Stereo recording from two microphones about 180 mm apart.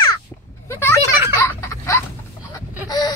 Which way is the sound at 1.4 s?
15° left (ahead or behind).